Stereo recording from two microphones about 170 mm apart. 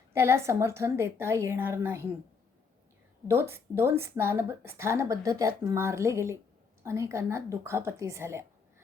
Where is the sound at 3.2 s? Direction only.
15° right (ahead or behind).